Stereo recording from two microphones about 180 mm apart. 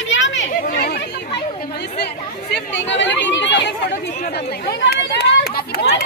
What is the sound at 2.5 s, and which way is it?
Speech, 90° left.